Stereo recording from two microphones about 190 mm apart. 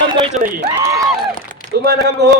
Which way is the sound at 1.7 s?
60° right (ahead or behind).